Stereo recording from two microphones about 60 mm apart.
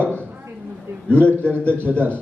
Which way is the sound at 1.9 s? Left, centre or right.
Right.